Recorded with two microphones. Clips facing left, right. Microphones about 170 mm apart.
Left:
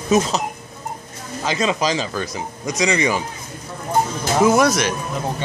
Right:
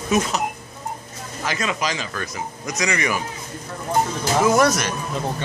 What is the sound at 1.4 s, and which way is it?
Speech, 25° left (ahead or behind).